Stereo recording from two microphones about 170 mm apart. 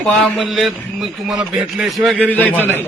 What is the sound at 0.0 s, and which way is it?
A man's voice, centre (ahead or behind).